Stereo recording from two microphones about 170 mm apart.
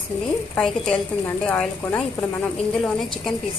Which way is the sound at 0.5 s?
5° left (ahead or behind).